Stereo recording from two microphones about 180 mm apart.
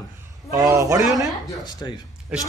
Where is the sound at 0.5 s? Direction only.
15° right (ahead or behind).